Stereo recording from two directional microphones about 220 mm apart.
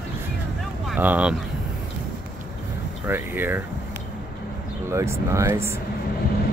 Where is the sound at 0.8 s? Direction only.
5° right (ahead or behind).